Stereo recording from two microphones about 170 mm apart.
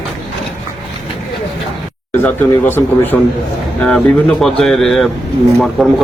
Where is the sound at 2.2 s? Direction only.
10° left (ahead or behind).